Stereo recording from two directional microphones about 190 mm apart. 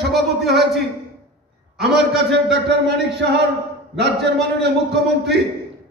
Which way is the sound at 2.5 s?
65° right (ahead or behind).